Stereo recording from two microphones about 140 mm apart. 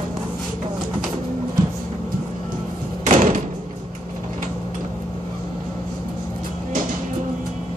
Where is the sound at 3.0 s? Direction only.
65° right (ahead or behind).